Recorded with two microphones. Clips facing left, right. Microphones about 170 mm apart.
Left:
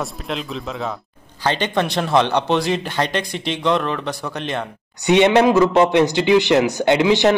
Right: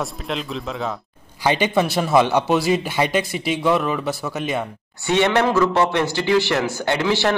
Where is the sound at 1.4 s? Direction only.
10° right (ahead or behind).